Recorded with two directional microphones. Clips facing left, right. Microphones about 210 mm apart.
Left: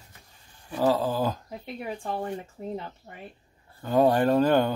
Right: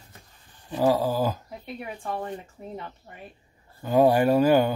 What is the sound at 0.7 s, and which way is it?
Speech, 15° right (ahead or behind).